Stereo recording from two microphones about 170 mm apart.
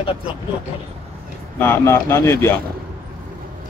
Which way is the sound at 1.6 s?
15° left (ahead or behind).